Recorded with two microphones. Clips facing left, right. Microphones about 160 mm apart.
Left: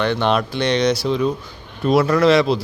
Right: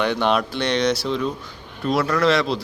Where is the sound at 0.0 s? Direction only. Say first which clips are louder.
Left 2 dB; 10° right (ahead or behind).